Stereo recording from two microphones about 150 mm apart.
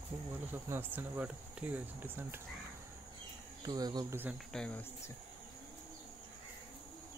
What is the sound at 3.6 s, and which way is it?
Speech, 25° right (ahead or behind).